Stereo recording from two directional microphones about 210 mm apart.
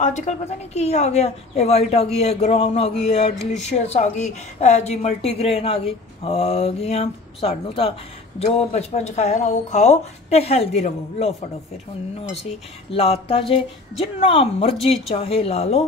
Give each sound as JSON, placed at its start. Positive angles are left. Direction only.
{"t": 0.0, "sound": "a woman's voice", "side_deg": 35}
{"t": 12.9, "sound": "a woman's voice", "side_deg": 30}